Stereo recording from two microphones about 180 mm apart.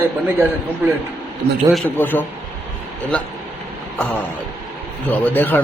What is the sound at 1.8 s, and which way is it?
Speech, 10° left (ahead or behind).